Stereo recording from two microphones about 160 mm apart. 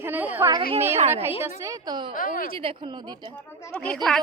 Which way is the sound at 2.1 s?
60° left (ahead or behind).